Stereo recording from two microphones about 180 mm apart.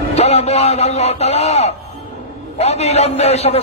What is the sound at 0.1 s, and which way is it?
A man's voice, 35° left (ahead or behind).